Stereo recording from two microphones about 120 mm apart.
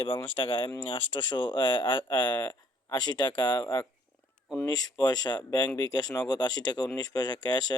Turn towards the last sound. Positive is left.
turn(degrees=35)  # may be behind; listen again after turning